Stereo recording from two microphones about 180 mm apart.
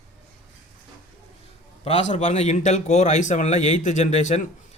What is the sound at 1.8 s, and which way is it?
A man's voice, 40° left (ahead or behind).